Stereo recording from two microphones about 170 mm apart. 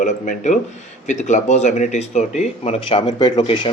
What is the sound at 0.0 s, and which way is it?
Speech, 50° left (ahead or behind).